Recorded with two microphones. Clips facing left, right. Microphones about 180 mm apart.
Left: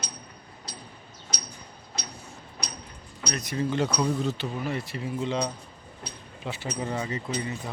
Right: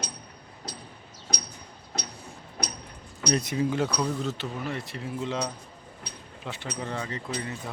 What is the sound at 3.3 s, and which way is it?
Speech, 30° right (ahead or behind).